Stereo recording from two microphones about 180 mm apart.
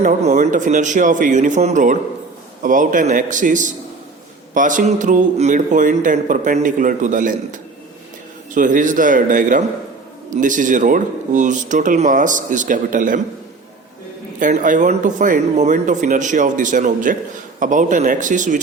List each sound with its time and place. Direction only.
0.0 s a man's voice: 45° right (ahead or behind)
14.3 s a man's voice: 45° right (ahead or behind)